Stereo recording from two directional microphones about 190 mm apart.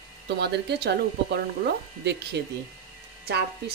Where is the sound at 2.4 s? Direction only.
60° right (ahead or behind).